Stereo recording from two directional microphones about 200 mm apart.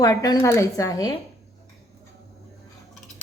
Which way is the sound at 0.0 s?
20° left (ahead or behind).